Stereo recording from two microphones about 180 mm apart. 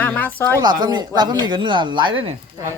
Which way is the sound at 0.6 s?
20° right (ahead or behind).